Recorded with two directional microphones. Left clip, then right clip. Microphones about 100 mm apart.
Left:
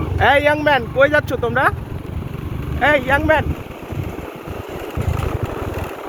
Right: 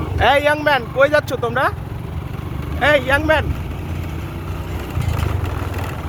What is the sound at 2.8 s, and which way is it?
Speech, 30° right (ahead or behind).